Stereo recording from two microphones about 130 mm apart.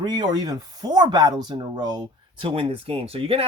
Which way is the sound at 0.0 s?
30° right (ahead or behind).